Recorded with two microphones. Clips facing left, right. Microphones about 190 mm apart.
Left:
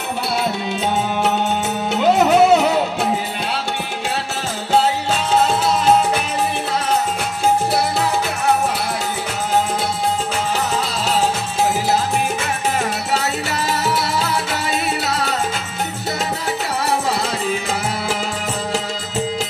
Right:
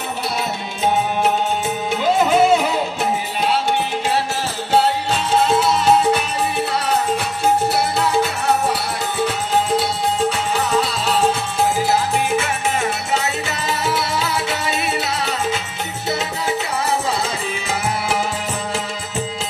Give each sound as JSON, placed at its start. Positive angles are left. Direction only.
{"t": 2.1, "sound": "music", "side_deg": 70}